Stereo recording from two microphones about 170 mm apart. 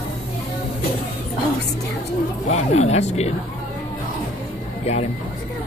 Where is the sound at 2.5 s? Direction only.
40° left (ahead or behind).